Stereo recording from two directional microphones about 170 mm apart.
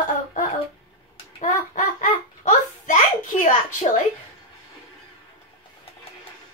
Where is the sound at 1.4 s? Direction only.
45° left (ahead or behind).